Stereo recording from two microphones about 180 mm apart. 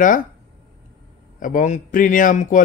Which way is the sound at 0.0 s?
45° left (ahead or behind).